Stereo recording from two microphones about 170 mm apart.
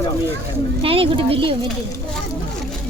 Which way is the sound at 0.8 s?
35° right (ahead or behind).